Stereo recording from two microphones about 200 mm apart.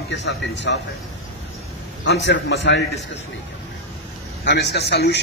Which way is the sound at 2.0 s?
60° left (ahead or behind).